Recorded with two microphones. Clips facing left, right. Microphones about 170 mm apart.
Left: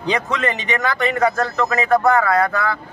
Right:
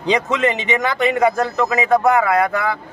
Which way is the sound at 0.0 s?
20° right (ahead or behind).